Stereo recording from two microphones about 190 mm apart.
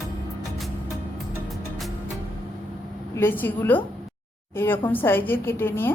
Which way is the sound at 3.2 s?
10° left (ahead or behind).